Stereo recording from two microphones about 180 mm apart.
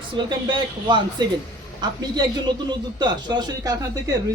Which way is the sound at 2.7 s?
25° right (ahead or behind).